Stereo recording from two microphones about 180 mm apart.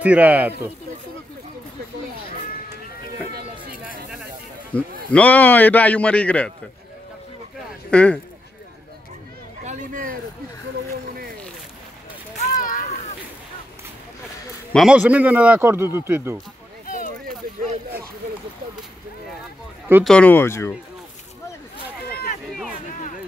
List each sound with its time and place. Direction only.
0.0 s speech: 10° right (ahead or behind)
4.7 s a man's voice: 5° left (ahead or behind)
7.9 s a man's voice: 5° left (ahead or behind)
9.7 s speech: 50° right (ahead or behind)
12.4 s a sound: 50° left (ahead or behind)
14.7 s speech: centre (ahead or behind)
20.1 s a man's voice: 10° left (ahead or behind)
22.1 s a sound: 55° left (ahead or behind)
22.8 s a sound: 45° left (ahead or behind)